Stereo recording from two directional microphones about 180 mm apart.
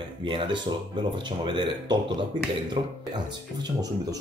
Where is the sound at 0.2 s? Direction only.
25° right (ahead or behind).